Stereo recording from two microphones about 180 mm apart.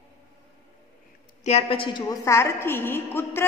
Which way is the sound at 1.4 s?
35° left (ahead or behind).